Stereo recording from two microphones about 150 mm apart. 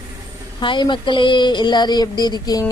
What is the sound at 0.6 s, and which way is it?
Speech, 30° left (ahead or behind).